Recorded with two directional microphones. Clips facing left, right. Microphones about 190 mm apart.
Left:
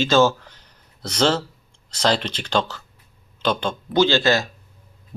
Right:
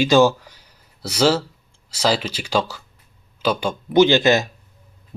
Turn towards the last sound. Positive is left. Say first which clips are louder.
# right 4 dB
turn(degrees=-20)  # may be behind; listen again after turning